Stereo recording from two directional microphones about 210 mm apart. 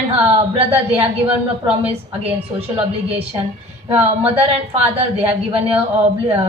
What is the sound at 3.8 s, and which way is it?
Speech, 10° right (ahead or behind).